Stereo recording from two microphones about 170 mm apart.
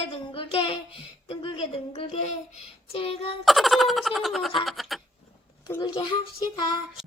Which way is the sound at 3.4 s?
Centre (ahead or behind).